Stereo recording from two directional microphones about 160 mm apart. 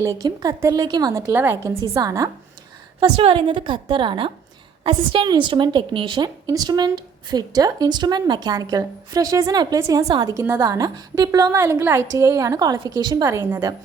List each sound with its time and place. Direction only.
0.0 s a woman's voice: 20° right (ahead or behind)
3.0 s a woman's voice: 35° right (ahead or behind)